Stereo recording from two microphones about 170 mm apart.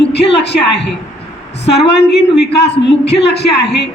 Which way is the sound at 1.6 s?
80° left.